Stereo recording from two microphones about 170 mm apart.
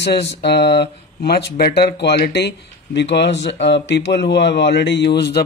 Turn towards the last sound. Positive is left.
turn(degrees=80)